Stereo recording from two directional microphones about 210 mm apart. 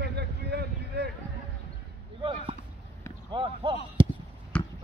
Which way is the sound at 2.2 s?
25° right (ahead or behind).